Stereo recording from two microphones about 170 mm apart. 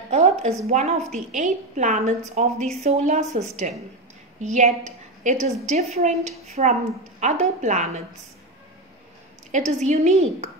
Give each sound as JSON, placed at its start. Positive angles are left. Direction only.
{"t": 0.1, "sound": "a woman's voice", "side_deg": -40}
{"t": 9.5, "sound": "a woman's voice", "side_deg": -40}